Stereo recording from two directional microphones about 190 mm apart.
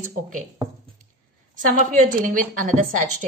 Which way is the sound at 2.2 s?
45° right (ahead or behind).